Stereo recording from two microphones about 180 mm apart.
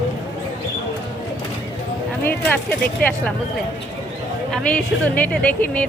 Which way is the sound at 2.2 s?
10° left (ahead or behind).